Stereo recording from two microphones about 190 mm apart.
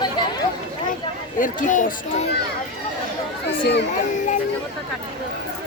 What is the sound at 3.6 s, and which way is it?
Speech, 65° left (ahead or behind).